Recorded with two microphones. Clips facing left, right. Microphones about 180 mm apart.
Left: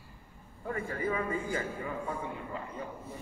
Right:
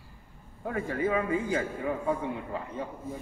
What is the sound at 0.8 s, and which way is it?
Speech, 90° right.